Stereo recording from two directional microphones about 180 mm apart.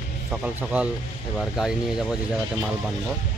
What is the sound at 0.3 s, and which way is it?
Speech, 5° right (ahead or behind).